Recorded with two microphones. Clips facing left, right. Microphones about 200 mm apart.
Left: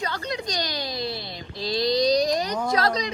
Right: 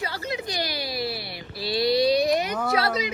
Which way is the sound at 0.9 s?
10° right (ahead or behind).